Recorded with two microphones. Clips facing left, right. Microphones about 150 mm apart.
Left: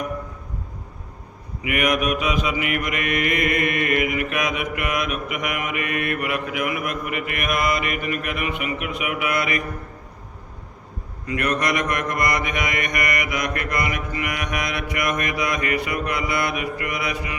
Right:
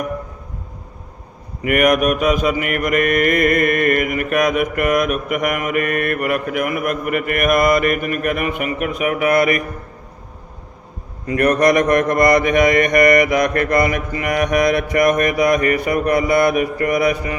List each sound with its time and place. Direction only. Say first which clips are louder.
1.6 s mantra: right 7 dB; 50° right (ahead or behind)
11.3 s mantra: right 9 dB; 40° right (ahead or behind)